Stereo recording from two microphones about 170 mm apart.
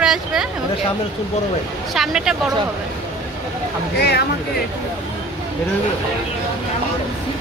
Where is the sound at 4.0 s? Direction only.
75° left (ahead or behind).